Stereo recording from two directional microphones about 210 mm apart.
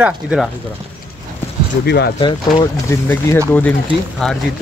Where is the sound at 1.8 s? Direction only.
50° left (ahead or behind).